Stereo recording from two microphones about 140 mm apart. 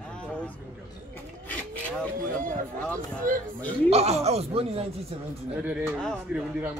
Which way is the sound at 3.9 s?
50° right (ahead or behind).